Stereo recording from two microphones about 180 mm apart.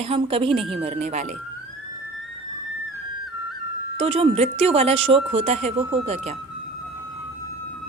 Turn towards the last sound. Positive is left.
turn(degrees=-35)  # may be behind; listen again after turning